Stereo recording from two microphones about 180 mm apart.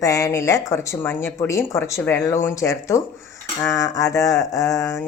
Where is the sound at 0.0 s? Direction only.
15° left (ahead or behind).